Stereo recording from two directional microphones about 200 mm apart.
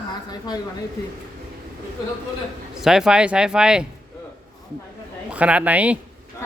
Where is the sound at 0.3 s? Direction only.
20° left (ahead or behind).